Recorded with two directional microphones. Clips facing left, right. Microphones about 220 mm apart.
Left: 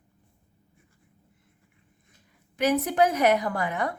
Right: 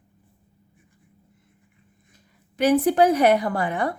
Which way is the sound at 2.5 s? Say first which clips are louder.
Right 5 dB; 35° right (ahead or behind).